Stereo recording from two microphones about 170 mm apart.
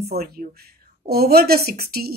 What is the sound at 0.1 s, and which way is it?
Speech, 65° right (ahead or behind).